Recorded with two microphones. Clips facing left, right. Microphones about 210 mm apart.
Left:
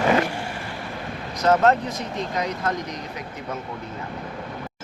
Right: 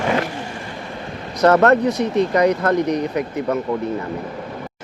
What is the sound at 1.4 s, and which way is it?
Speech, 65° right (ahead or behind).